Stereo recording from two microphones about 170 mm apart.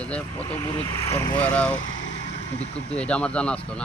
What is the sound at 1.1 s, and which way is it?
Speech, 20° left (ahead or behind).